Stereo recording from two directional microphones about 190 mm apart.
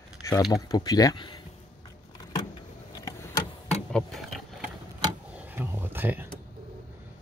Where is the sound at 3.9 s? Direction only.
5° left (ahead or behind).